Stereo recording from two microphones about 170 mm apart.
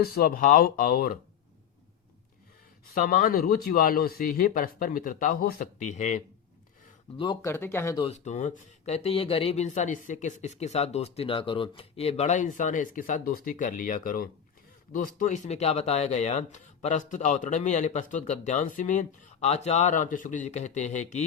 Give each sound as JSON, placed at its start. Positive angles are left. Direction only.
{"t": 0.0, "sound": "speech", "side_deg": 65}
{"t": 3.0, "sound": "speech", "side_deg": 55}
{"t": 7.4, "sound": "speech", "side_deg": 15}
{"t": 8.0, "sound": "speech", "side_deg": 45}
{"t": 9.0, "sound": "speech", "side_deg": 35}